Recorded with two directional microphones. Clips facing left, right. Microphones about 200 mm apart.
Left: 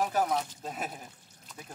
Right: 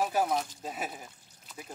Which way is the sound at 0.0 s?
10° right (ahead or behind).